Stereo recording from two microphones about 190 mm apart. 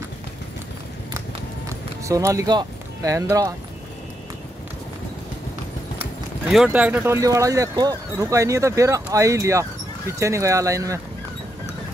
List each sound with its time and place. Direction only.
1.7 s speech: 15° right (ahead or behind)
5.9 s speech: centre (ahead or behind)